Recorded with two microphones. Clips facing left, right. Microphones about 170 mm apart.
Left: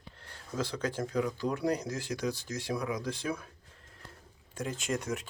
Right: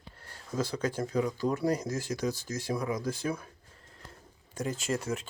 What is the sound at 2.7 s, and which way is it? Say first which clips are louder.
Speech: right 2 dB; 5° right (ahead or behind).